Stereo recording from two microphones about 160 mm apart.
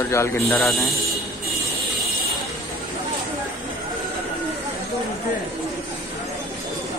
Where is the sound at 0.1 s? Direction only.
15° left (ahead or behind).